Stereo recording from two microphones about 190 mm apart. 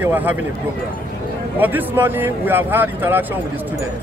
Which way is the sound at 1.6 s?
10° right (ahead or behind).